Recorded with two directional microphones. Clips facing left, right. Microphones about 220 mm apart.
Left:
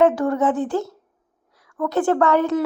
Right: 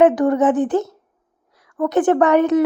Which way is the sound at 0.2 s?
20° right (ahead or behind).